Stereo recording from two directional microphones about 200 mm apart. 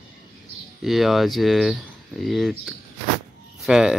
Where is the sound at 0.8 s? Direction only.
Centre (ahead or behind).